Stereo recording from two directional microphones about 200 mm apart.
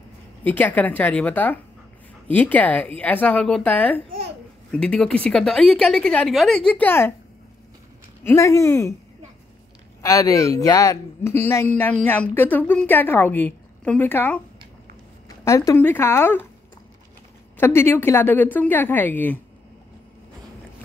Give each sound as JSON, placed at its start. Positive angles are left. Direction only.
{"t": 0.4, "sound": "a woman's voice", "side_deg": 10}
{"t": 8.2, "sound": "a woman's voice", "side_deg": 10}
{"t": 10.0, "sound": "a woman's voice", "side_deg": 15}
{"t": 17.6, "sound": "a woman's voice", "side_deg": 10}